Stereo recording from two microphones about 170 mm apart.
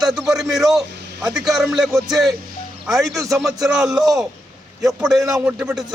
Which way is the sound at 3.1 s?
20° right (ahead or behind).